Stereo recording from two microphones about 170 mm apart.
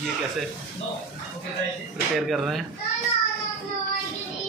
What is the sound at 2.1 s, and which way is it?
Speech, centre (ahead or behind).